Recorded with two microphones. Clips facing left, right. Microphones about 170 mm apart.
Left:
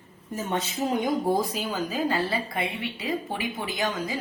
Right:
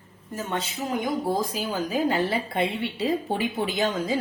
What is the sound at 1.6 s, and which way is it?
A woman's voice, 15° right (ahead or behind).